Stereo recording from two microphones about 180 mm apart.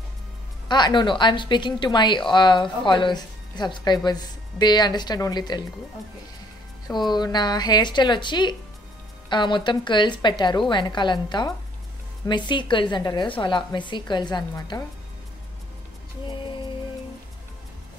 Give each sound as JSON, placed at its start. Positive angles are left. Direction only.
{"t": 0.7, "sound": "speech", "side_deg": 25}
{"t": 6.9, "sound": "speech", "side_deg": 25}